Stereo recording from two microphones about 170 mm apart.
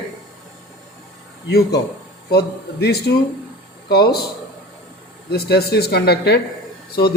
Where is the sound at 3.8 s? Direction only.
70° left (ahead or behind).